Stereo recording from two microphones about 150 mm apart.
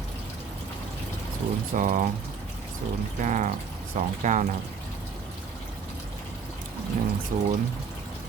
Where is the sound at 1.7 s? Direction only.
60° right (ahead or behind).